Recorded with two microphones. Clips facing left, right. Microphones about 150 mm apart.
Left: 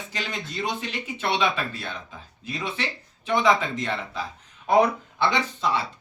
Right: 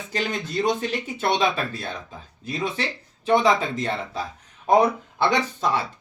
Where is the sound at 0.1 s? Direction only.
45° right (ahead or behind).